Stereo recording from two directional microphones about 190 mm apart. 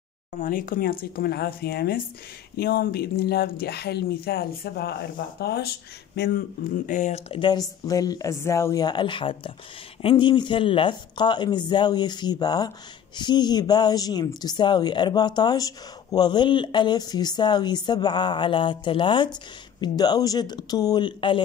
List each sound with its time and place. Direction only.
0.4 s speech: 45° left (ahead or behind); by 21.4 s 25° left (ahead or behind)